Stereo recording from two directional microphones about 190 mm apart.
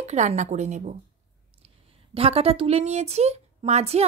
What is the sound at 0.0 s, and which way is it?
Speech, 35° right (ahead or behind).